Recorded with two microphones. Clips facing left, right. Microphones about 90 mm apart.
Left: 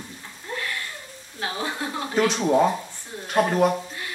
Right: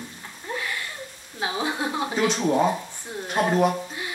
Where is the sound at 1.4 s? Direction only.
15° right (ahead or behind).